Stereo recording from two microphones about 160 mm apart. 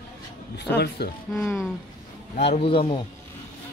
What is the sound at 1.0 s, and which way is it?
Speech, 90° left.